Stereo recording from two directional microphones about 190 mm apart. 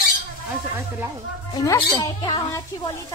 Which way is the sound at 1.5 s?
20° left (ahead or behind).